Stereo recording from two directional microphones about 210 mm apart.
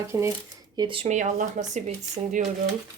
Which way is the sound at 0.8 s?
25° right (ahead or behind).